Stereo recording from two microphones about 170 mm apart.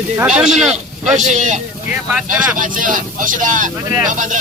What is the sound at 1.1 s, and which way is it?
Speech, 45° right (ahead or behind).